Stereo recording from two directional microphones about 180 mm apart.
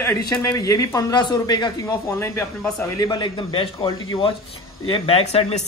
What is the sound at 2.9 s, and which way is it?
A man's voice, 20° left (ahead or behind).